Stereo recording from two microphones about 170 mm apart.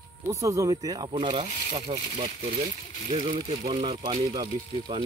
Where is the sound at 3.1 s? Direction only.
40° right (ahead or behind).